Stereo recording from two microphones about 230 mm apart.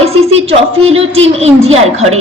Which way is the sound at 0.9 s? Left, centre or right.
Right.